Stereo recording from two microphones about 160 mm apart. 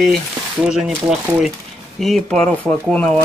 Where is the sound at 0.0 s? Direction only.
Centre (ahead or behind).